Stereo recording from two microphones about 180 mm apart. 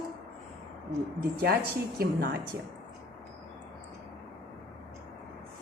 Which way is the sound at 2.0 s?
55° right (ahead or behind).